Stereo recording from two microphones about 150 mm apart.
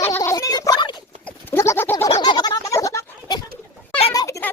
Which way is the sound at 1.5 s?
15° left (ahead or behind).